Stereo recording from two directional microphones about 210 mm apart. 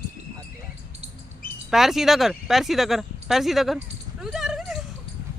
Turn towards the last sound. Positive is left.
turn(degrees=0)  # may be behind; listen again after turning